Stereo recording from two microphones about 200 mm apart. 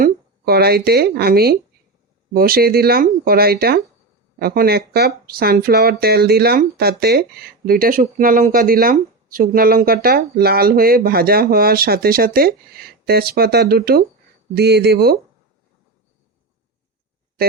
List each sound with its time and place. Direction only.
0.0 s speech: 50° right (ahead or behind)